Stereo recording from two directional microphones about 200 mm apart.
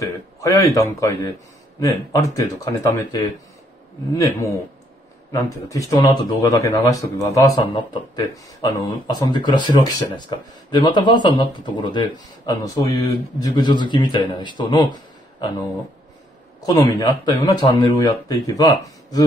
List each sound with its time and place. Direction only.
0.0 s speech: 15° left (ahead or behind)
16.6 s speech: 20° left (ahead or behind)